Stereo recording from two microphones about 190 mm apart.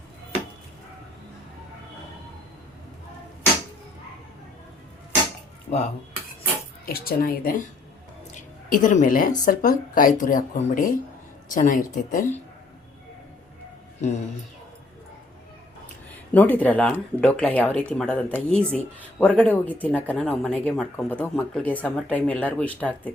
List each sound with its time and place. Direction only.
5.7 s dishes: 40° left (ahead or behind)
6.8 s a woman's voice: 50° left (ahead or behind)
16.3 s speech: 10° left (ahead or behind)